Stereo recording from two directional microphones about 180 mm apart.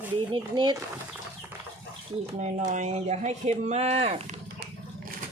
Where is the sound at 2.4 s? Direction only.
40° right (ahead or behind).